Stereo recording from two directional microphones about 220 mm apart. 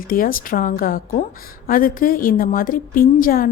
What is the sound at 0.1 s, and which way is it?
A woman's voice, 40° left (ahead or behind).